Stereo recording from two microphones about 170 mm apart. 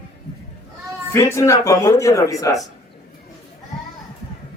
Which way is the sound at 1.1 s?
15° left (ahead or behind).